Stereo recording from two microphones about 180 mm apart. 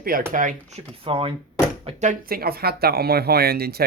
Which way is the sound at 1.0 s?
30° right (ahead or behind).